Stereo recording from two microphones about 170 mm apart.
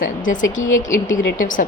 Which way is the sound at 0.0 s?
50° left (ahead or behind).